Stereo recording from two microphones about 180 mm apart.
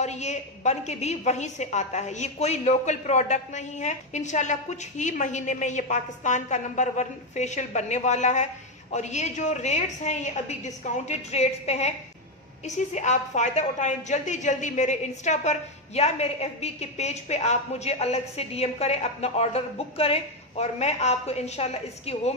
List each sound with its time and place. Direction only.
0.0 s a woman's voice: 40° left (ahead or behind)